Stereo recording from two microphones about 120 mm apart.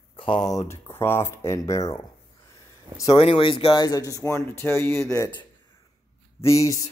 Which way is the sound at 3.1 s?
50° left (ahead or behind).